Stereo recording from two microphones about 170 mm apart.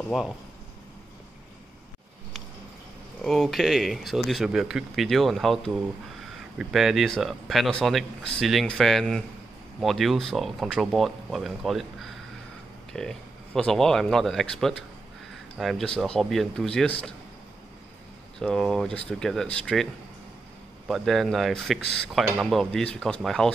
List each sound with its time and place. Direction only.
0.1 s speech: 5° right (ahead or behind)
3.2 s speech: centre (ahead or behind)
18.4 s speech: 5° left (ahead or behind)
20.9 s speech: centre (ahead or behind)